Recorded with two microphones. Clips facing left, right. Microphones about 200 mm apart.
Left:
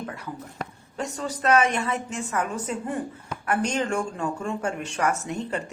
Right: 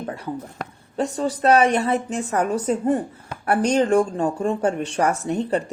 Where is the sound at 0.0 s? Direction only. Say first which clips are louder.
Right 5 dB; 30° right (ahead or behind).